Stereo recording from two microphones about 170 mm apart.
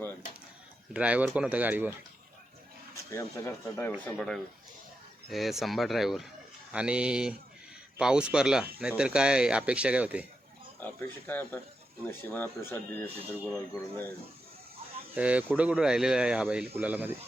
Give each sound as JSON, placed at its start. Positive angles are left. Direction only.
{"t": 0.9, "sound": "speech", "side_deg": -5}
{"t": 2.9, "sound": "speech", "side_deg": 20}
{"t": 5.3, "sound": "speech", "side_deg": 0}
{"t": 10.8, "sound": "speech", "side_deg": 10}
{"t": 13.1, "sound": "speech", "side_deg": -10}
{"t": 15.1, "sound": "speech", "side_deg": -10}